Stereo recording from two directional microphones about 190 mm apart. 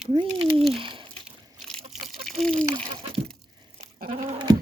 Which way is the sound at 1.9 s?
Centre (ahead or behind).